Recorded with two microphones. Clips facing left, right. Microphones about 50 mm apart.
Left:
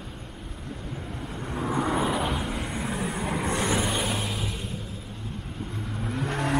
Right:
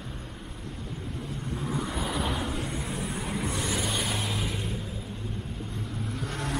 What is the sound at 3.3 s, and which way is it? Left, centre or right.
Vehicle, left.